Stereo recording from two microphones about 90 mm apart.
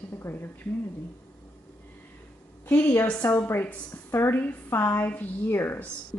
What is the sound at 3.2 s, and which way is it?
A woman's voice, 30° left (ahead or behind).